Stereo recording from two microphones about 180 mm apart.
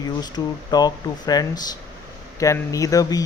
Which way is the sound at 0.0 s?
20° left (ahead or behind).